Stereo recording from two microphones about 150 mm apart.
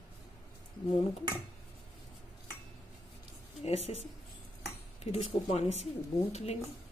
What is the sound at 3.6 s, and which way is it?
Speech, 45° left (ahead or behind).